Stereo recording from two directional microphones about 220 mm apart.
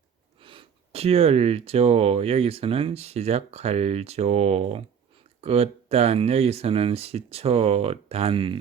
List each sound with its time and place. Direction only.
0.3 s speech: 25° right (ahead or behind)